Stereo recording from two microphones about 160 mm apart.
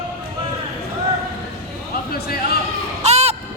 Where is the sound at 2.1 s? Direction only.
75° left (ahead or behind).